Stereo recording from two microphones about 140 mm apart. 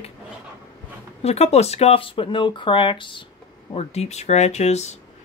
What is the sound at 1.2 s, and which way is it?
Speech, 50° left (ahead or behind).